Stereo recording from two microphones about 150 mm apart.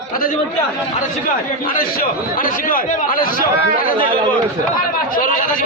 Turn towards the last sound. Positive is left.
turn(degrees=65)  # may be behind; listen again after turning